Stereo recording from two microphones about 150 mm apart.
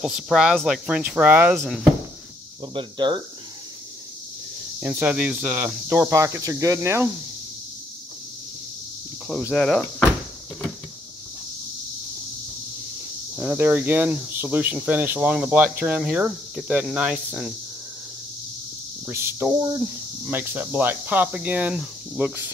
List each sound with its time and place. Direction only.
0.0 s speech: centre (ahead or behind)
2.7 s speech: 30° right (ahead or behind)
4.7 s speech: 10° right (ahead or behind)
9.5 s speech: 5° left (ahead or behind)
13.4 s speech: 10° right (ahead or behind)
19.0 s speech: 15° right (ahead or behind)